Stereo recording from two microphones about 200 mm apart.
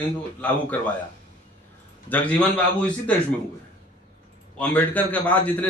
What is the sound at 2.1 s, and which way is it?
Speech, 5° left (ahead or behind).